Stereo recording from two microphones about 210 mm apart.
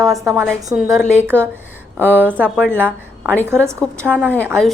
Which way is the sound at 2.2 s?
10° right (ahead or behind).